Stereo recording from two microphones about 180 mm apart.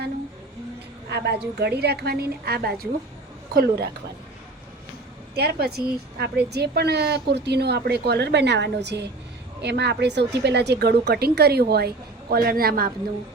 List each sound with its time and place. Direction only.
1.1 s a woman's voice: 65° right (ahead or behind)
5.3 s a woman's voice: 60° right (ahead or behind)